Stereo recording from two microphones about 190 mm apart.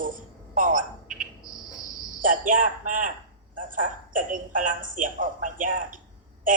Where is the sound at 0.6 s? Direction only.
45° right (ahead or behind).